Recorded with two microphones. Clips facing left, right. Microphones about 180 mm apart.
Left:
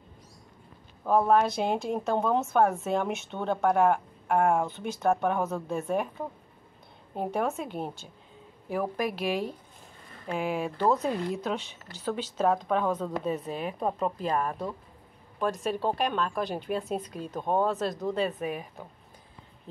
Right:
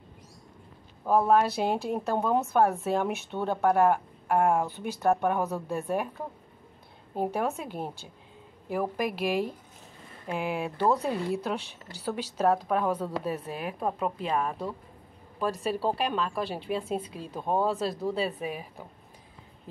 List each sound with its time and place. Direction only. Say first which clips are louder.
1.0 s a woman's voice: even; 5° right (ahead or behind)
7.2 s a woman's voice: even; 5° right (ahead or behind)